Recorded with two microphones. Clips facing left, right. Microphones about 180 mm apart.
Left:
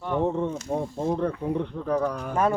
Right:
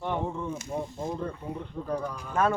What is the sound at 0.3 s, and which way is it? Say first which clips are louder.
Speech: left 7 dB; 70° left (ahead or behind).